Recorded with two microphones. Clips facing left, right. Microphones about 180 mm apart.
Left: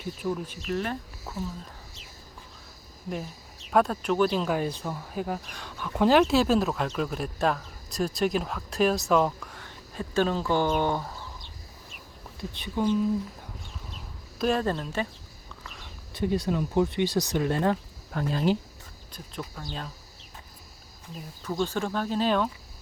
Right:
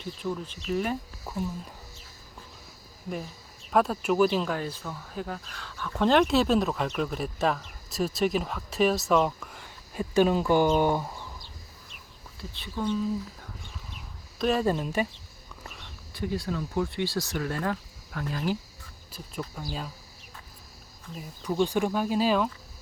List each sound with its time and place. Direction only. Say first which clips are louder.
0.0 s speech: left 2 dB; 10° left (ahead or behind)
0.7 s speech: right 2 dB; 5° right (ahead or behind)
3.7 s speech: left 1 dB; centre (ahead or behind)
4.5 s speech: left 4 dB; 15° left (ahead or behind); by 11.2 s 10° right (ahead or behind)
12.5 s speech: left 4 dB; 20° left (ahead or behind)
14.3 s speech: right 1 dB; centre (ahead or behind)
16.1 s speech: left 4 dB; 20° left (ahead or behind)
19.6 s speech: right 2 dB; 10° right (ahead or behind)
21.4 s speech: right 3 dB; 15° right (ahead or behind)